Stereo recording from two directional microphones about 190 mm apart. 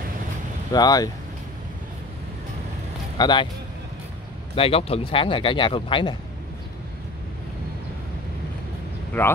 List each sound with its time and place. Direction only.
0.7 s speech: 20° left (ahead or behind)
3.2 s speech: 25° left (ahead or behind)
4.6 s speech: 30° left (ahead or behind)
9.1 s speech: 10° left (ahead or behind)